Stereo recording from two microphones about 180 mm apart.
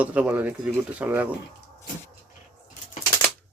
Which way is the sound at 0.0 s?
5° right (ahead or behind).